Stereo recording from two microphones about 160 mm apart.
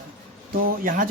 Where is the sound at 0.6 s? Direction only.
60° right (ahead or behind).